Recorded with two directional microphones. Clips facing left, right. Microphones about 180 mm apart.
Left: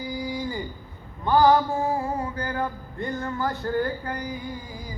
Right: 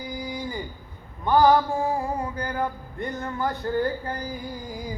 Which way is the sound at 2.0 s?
15° right (ahead or behind).